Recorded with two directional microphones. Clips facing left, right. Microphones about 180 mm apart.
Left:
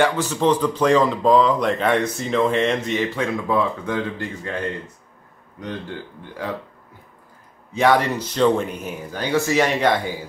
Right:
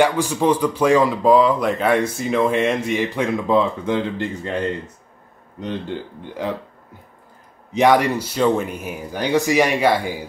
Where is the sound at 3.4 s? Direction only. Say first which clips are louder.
Right 5 dB; 20° right (ahead or behind).